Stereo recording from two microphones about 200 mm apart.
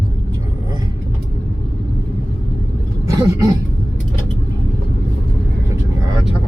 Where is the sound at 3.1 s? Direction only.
15° right (ahead or behind).